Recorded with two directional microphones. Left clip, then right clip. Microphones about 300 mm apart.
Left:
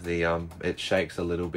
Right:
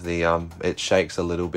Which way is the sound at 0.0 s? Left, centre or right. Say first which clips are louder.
Right 5 dB; centre.